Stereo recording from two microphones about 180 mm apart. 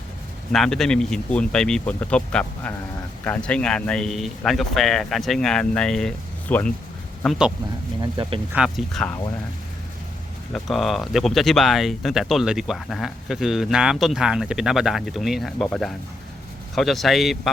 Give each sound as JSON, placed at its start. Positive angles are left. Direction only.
{"t": 0.5, "sound": "speech", "side_deg": 0}
{"t": 8.0, "sound": "speech", "side_deg": -25}
{"t": 8.5, "sound": "speech", "side_deg": 0}
{"t": 10.5, "sound": "speech", "side_deg": 0}